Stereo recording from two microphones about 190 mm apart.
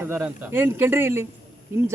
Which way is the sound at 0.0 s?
10° right (ahead or behind).